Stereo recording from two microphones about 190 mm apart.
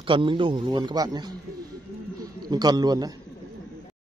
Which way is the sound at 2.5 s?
20° right (ahead or behind).